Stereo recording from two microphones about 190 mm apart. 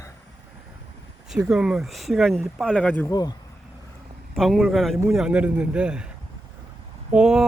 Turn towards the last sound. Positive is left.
turn(degrees=-5)  # may be behind; listen again after turning